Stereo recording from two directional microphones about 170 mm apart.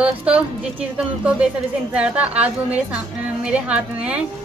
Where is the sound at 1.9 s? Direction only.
10° right (ahead or behind).